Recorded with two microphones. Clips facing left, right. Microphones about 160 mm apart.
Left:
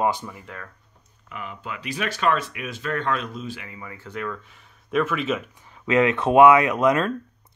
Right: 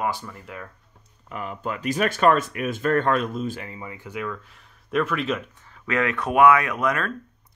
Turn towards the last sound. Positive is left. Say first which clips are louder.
# left 5 dB
turn(degrees=20)  # may be behind; listen again after turning